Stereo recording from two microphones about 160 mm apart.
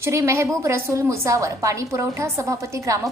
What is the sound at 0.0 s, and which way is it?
A woman's voice, 20° right (ahead or behind).